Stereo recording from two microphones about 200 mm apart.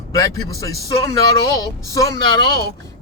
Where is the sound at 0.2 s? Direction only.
15° left (ahead or behind).